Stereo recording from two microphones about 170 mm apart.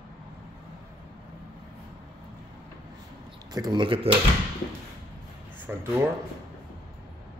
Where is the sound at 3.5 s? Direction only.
25° right (ahead or behind).